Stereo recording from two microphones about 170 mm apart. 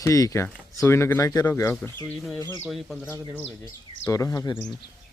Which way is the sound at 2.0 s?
Centre (ahead or behind).